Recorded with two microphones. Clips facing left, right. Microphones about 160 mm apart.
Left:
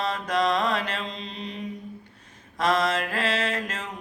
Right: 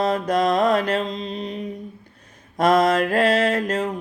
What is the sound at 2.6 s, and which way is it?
Mantra, 45° right (ahead or behind).